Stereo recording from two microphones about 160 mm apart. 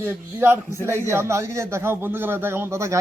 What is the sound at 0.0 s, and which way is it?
Speech, 10° right (ahead or behind).